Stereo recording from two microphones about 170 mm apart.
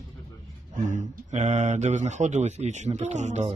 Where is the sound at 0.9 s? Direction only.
50° right (ahead or behind).